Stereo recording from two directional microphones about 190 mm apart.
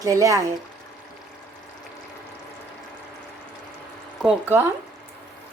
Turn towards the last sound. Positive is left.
turn(degrees=-10)  # may be behind; listen again after turning